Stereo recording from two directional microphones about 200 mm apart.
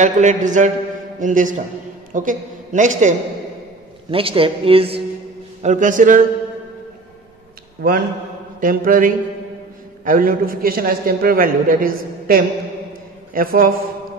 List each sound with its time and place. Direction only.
0.0 s a woman's voice: 40° right (ahead or behind)
4.1 s speech: 25° right (ahead or behind)
5.6 s a woman's voice: 40° right (ahead or behind)
7.8 s a man's voice: 50° right (ahead or behind)